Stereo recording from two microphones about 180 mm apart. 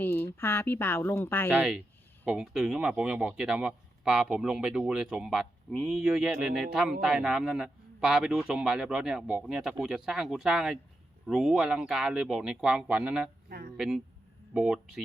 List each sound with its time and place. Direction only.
0.0 s speech: 10° left (ahead or behind)
1.5 s speech: 5° right (ahead or behind)
13.5 s speech: 55° right (ahead or behind)
13.7 s speech: centre (ahead or behind)